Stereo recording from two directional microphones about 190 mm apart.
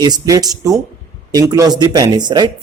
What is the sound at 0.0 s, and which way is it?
Speech, 20° right (ahead or behind).